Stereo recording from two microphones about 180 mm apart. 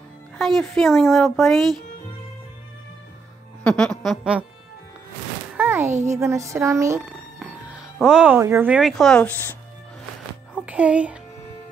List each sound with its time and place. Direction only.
0.4 s speech: centre (ahead or behind)
3.6 s speech: 5° left (ahead or behind)
5.6 s a sound: 15° right (ahead or behind)
6.0 s music: 15° right (ahead or behind)
7.0 s music: 5° right (ahead or behind)
8.4 s speech: 15° right (ahead or behind); by 9.6 s 10° left (ahead or behind)
10.6 s a child's voice: 5° right (ahead or behind)